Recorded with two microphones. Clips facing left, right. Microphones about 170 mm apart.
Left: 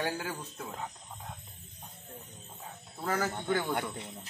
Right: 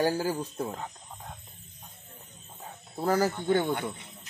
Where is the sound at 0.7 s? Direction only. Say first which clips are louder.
Right 2 dB; centre (ahead or behind).